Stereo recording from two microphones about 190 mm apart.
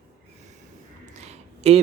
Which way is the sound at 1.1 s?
35° right (ahead or behind).